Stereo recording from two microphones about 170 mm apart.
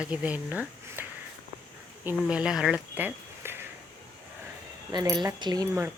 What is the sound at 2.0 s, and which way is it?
Speech, 5° right (ahead or behind).